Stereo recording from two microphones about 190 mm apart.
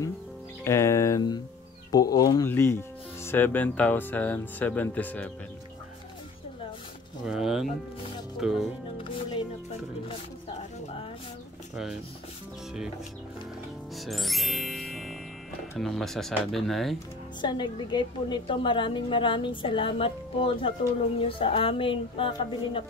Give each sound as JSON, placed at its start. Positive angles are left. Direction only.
{"t": 0.7, "sound": "a woman's voice", "side_deg": 15}
{"t": 7.2, "sound": "speech", "side_deg": 0}
{"t": 11.7, "sound": "rub", "side_deg": -5}
{"t": 13.9, "sound": "music", "side_deg": 0}
{"t": 15.7, "sound": "speech", "side_deg": 0}
{"t": 17.4, "sound": "a woman's voice", "side_deg": 25}